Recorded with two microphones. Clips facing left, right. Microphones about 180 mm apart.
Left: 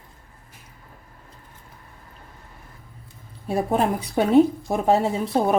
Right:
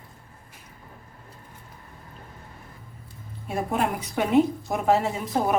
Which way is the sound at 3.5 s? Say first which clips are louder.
Left 4 dB; 35° left (ahead or behind).